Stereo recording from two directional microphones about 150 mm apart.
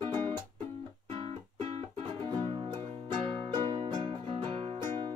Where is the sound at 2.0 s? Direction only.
35° right (ahead or behind).